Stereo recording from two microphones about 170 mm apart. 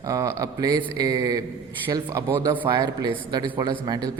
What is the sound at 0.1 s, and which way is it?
Speech, 20° right (ahead or behind).